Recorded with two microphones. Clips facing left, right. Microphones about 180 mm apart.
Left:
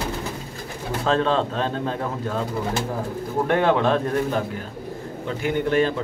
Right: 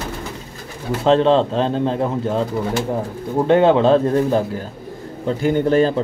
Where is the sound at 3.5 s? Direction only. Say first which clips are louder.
Right 7 dB; 25° right (ahead or behind).